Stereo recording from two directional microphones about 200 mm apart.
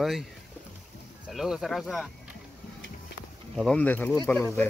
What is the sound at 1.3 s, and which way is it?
Speech, centre (ahead or behind).